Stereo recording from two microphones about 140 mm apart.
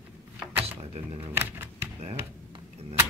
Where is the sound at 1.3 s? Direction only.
15° right (ahead or behind).